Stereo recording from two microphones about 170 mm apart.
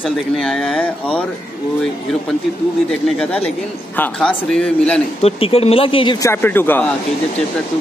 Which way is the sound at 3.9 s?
5° left (ahead or behind).